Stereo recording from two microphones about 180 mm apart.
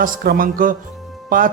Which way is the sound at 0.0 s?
50° right (ahead or behind).